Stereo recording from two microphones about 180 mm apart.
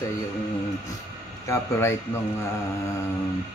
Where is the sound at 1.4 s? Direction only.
15° left (ahead or behind).